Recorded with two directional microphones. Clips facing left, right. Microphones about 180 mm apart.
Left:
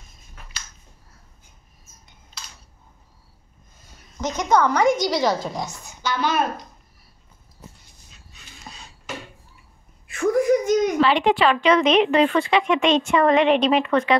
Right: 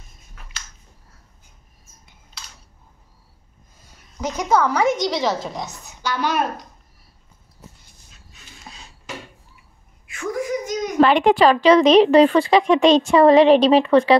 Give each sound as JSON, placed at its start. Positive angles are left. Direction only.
{"t": 4.2, "sound": "a woman's voice", "side_deg": -10}
{"t": 6.0, "sound": "a woman's voice", "side_deg": -10}
{"t": 8.7, "sound": "a sound", "side_deg": -5}
{"t": 10.1, "sound": "whimper", "side_deg": 60}
{"t": 11.0, "sound": "speech", "side_deg": -50}